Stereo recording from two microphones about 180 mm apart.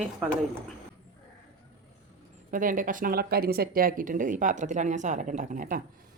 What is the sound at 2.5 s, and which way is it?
A woman's voice, 50° right (ahead or behind).